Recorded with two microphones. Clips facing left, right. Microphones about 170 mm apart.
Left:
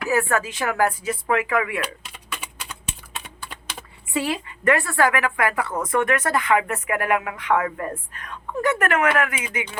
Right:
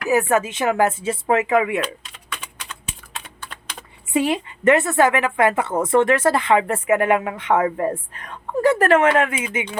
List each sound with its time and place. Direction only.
0.1 s a woman's voice: 20° right (ahead or behind)
2.3 s typing: 10° left (ahead or behind)
4.1 s a woman's voice: 20° right (ahead or behind)